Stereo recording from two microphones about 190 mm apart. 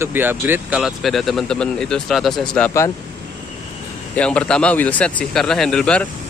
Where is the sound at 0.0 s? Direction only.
10° right (ahead or behind).